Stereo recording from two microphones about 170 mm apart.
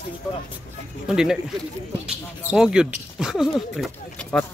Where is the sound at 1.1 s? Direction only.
5° right (ahead or behind).